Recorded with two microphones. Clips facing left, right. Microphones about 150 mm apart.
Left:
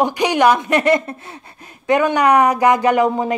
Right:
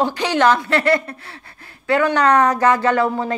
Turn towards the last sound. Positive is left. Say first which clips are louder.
# left 3 dB
turn(degrees=15)  # may be behind; listen again after turning